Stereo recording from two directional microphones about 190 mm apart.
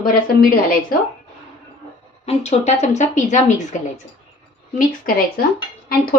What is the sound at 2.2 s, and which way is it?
A woman's voice, 35° left (ahead or behind).